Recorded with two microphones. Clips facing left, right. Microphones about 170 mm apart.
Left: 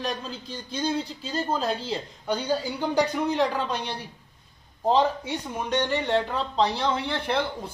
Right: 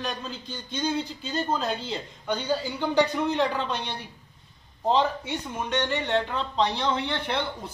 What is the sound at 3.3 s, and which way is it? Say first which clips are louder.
Speech: left 1 dB; 40° left (ahead or behind).